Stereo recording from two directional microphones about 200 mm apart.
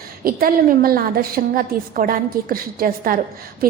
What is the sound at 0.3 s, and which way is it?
A woman's voice, 45° right (ahead or behind).